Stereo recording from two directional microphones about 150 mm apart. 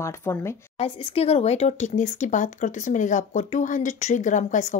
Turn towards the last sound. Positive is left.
turn(degrees=55)  # may be behind; listen again after turning